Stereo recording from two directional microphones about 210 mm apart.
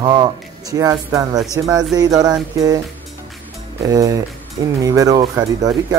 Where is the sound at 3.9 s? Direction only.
15° right (ahead or behind).